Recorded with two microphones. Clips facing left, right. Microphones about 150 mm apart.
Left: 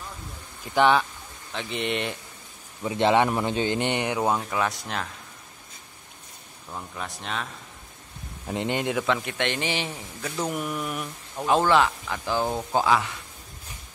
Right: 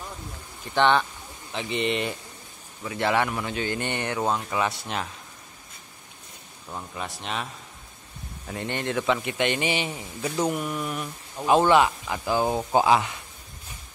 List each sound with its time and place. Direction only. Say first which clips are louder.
0.7 s mantra: left 1 dB; 5° left (ahead or behind)
2.8 s a man's voice: left 4 dB; 25° left (ahead or behind)
4.5 s mantra: even; centre (ahead or behind)
6.7 s mantra: right 1 dB; 5° right (ahead or behind)
8.5 s speech: left 3 dB; 15° left (ahead or behind)
9.0 s speech: right 2 dB; centre (ahead or behind)
10.5 s mantra: right 1 dB; 5° left (ahead or behind)
11.4 s speech: right 2 dB; 10° right (ahead or behind)